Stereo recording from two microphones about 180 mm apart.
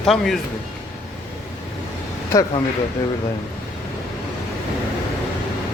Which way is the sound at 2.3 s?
20° left (ahead or behind).